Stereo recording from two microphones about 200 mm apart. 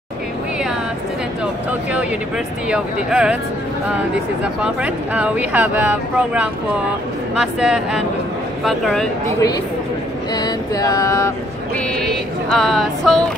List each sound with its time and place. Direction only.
1.4 s speech: 5° right (ahead or behind)
4.4 s speech: 5° right (ahead or behind)
10.3 s a sound: 20° left (ahead or behind)
11.7 s speech: 5° left (ahead or behind)